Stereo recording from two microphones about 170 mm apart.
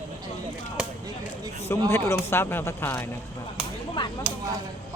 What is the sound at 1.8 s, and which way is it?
Speech, 15° left (ahead or behind).